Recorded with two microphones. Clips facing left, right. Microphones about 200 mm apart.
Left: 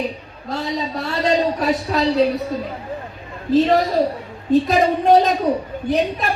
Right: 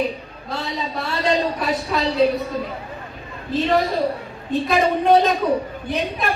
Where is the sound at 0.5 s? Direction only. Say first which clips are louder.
Left 3 dB; 40° left (ahead or behind).